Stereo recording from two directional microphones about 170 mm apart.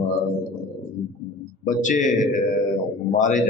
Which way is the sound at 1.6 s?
50° left (ahead or behind).